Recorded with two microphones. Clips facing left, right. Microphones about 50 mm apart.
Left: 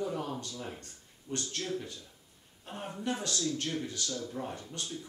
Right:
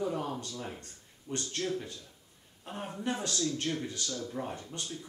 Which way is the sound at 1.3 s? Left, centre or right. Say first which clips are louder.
Right 1 dB; right.